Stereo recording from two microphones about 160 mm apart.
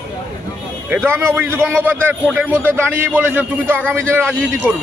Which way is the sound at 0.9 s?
15° right (ahead or behind).